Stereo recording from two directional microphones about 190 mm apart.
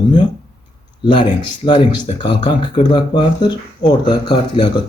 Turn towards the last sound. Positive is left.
turn(degrees=25)  # may be behind; listen again after turning